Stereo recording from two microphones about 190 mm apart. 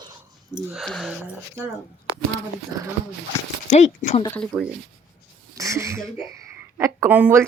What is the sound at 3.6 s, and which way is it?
Speech, 40° left (ahead or behind).